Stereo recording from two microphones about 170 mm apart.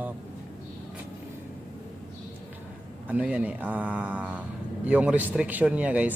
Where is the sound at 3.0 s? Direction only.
10° right (ahead or behind).